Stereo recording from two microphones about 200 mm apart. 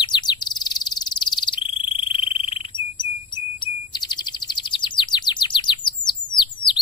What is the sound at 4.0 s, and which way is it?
Chirp, 20° left (ahead or behind).